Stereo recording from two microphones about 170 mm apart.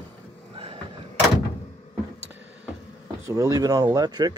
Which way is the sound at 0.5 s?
30° right (ahead or behind).